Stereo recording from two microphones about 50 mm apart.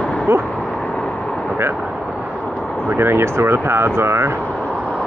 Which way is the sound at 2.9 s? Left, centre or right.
Right.